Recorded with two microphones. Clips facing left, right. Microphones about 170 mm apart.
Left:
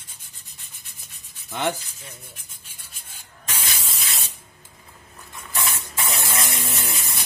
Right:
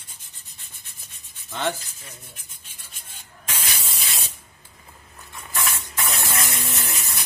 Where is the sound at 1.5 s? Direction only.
15° left (ahead or behind).